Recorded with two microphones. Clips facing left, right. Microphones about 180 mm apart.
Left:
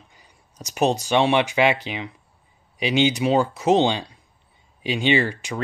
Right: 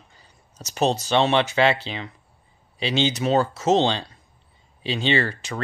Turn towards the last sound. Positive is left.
turn(degrees=15)  # may be behind; listen again after turning